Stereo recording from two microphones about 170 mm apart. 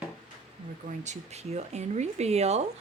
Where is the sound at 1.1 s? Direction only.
40° right (ahead or behind).